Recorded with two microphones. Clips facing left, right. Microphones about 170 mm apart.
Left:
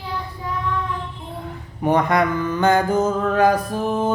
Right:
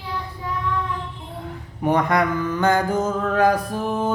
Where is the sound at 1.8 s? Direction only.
25° left (ahead or behind).